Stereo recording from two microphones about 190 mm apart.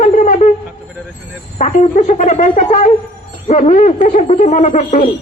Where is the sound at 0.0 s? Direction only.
40° left (ahead or behind).